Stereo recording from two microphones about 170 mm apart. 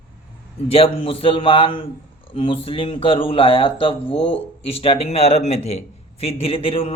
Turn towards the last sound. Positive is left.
turn(degrees=35)  # may be behind; listen again after turning